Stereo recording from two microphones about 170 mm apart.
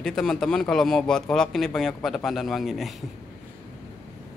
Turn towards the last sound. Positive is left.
turn(degrees=0)  # may be behind; listen again after turning